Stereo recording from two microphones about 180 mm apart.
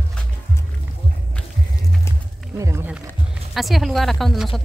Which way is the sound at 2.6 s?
15° right (ahead or behind).